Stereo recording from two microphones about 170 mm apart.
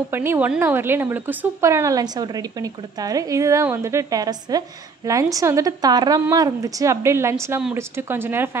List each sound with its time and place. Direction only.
0.1 s a woman's voice: 15° right (ahead or behind)